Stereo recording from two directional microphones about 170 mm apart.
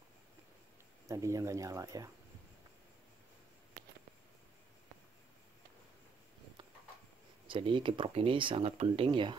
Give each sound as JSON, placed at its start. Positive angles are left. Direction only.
{"t": 1.0, "sound": "speech", "side_deg": -20}
{"t": 7.4, "sound": "speech", "side_deg": -30}